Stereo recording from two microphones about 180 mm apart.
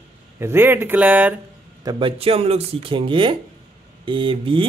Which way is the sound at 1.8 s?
25° right (ahead or behind).